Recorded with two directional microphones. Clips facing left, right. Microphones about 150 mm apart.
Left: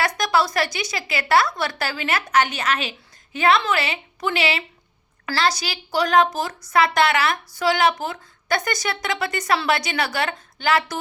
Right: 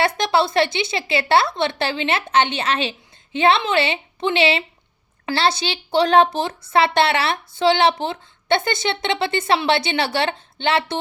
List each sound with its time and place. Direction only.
0.0 s a woman's voice: 25° right (ahead or behind)